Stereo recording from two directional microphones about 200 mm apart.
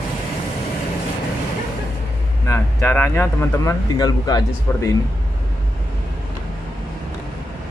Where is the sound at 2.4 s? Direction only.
15° left (ahead or behind).